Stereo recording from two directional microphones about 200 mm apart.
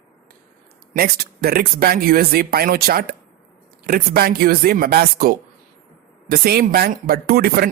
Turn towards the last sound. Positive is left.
turn(degrees=-50)  # may be behind; listen again after turning